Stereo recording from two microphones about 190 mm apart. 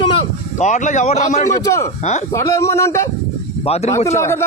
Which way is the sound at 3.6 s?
35° left (ahead or behind).